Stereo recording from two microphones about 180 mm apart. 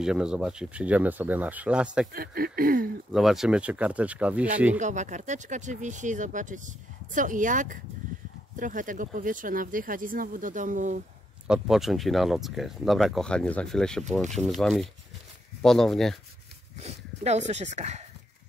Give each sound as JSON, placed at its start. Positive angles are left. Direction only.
{"t": 0.0, "sound": "speech", "side_deg": -5}
{"t": 2.1, "sound": "speech", "side_deg": -55}
{"t": 3.1, "sound": "speech", "side_deg": 0}
{"t": 4.7, "sound": "speech", "side_deg": -40}
{"t": 11.4, "sound": "speech", "side_deg": -5}
{"t": 16.7, "sound": "speech", "side_deg": -40}